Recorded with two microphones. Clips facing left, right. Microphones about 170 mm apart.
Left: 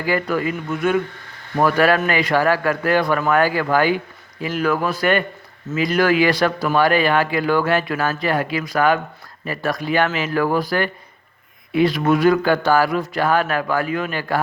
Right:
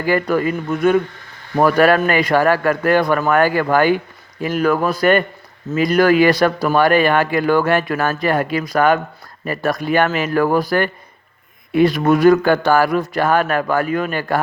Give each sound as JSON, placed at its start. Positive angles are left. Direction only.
{"t": 0.0, "sound": "speech", "side_deg": -45}